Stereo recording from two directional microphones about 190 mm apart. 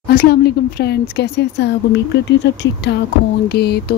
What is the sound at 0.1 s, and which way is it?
Speech, 55° left (ahead or behind).